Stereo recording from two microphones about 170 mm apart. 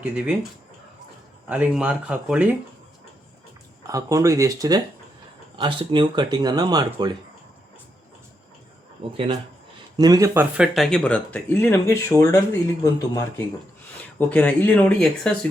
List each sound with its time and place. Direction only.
0.0 s speech: 10° right (ahead or behind)
1.5 s speech: 10° right (ahead or behind)
3.8 s speech: 20° right (ahead or behind)
9.1 s speech: 30° right (ahead or behind)
10.0 s speech: 20° right (ahead or behind)
10.6 s speech: centre (ahead or behind)